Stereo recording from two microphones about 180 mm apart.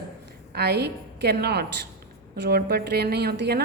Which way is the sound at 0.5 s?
65° right (ahead or behind).